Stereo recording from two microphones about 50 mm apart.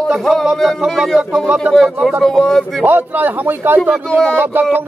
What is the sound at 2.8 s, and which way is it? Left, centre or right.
A man's voice, right.